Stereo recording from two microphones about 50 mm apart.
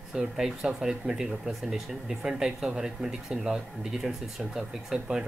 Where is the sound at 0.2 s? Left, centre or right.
Centre.